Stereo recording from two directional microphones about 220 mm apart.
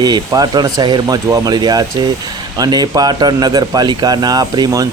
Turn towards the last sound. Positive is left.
turn(degrees=-15)  # may be behind; listen again after turning